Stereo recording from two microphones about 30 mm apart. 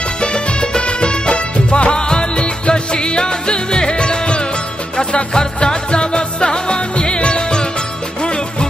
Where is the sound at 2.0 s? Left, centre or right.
Left.